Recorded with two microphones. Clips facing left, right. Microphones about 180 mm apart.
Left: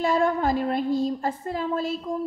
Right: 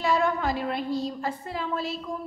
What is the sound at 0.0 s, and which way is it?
A woman's voice, 45° left (ahead or behind).